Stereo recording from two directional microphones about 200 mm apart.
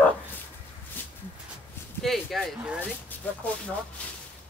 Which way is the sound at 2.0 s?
Centre (ahead or behind).